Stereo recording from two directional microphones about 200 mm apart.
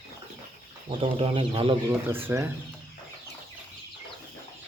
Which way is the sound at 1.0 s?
25° right (ahead or behind).